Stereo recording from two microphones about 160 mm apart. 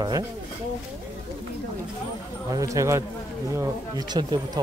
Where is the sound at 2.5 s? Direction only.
20° right (ahead or behind).